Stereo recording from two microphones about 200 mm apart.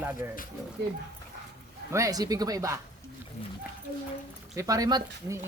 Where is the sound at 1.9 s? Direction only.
15° right (ahead or behind).